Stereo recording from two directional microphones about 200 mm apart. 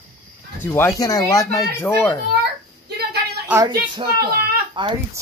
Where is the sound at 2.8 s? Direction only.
55° right (ahead or behind).